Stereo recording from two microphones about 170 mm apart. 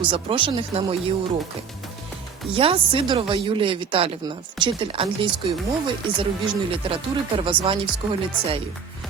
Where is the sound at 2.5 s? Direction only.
30° right (ahead or behind).